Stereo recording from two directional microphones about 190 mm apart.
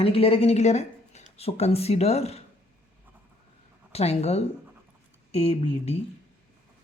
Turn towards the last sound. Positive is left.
turn(degrees=30)  # may be behind; listen again after turning